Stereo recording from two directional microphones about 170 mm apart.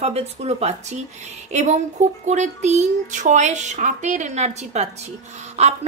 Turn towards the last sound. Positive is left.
turn(degrees=-40)  # may be behind; listen again after turning